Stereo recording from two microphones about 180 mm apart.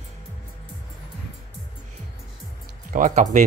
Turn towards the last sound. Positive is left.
turn(degrees=-45)  # may be behind; listen again after turning